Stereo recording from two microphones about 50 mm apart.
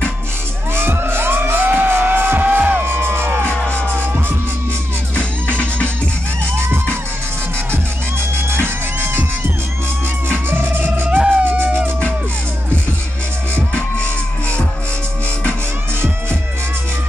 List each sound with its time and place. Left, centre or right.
0.7 s music: right
2.8 s music: right
3.4 s music: left
5.1 s music: left
8.6 s music: right
10.5 s music: right
11.1 s music: right
11.4 s music: right
13.6 s music: left